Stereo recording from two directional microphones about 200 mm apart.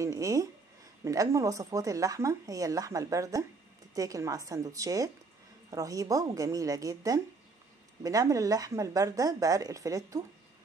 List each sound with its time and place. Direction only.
0.0 s speech: 15° right (ahead or behind)